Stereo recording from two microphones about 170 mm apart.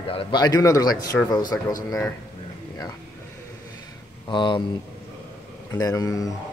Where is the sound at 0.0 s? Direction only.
30° left (ahead or behind); by 1.7 s 10° left (ahead or behind).